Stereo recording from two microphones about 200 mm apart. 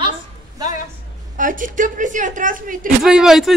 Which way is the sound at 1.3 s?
40° right (ahead or behind).